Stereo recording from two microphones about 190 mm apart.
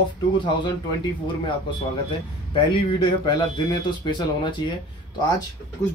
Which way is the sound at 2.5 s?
25° left (ahead or behind).